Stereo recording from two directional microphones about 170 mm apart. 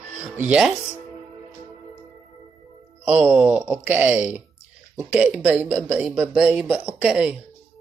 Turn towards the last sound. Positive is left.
turn(degrees=-5)  # may be behind; listen again after turning